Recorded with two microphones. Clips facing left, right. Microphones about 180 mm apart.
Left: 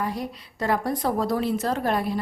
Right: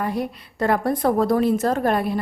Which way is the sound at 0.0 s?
55° right (ahead or behind).